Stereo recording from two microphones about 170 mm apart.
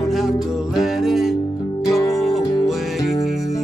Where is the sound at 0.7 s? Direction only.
Centre (ahead or behind).